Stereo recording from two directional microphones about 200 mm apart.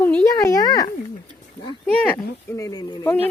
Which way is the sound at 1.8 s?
5° left (ahead or behind).